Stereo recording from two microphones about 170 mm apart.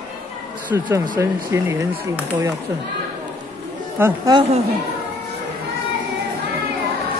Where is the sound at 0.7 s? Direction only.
15° right (ahead or behind).